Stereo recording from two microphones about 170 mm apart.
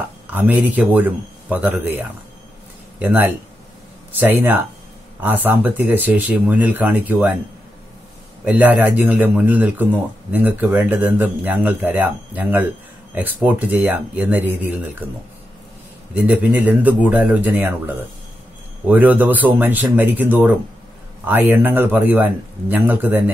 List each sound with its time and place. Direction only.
0.3 s speech: 10° right (ahead or behind)
8.5 s speech: 10° right (ahead or behind)
16.2 s speech: 10° right (ahead or behind)